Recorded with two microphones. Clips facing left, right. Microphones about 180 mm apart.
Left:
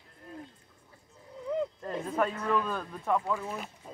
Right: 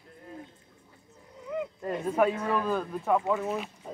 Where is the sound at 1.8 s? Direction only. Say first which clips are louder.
Right 4 dB; 10° right (ahead or behind).